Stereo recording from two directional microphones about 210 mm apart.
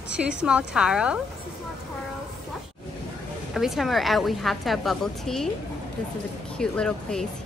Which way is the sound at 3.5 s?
Centre (ahead or behind).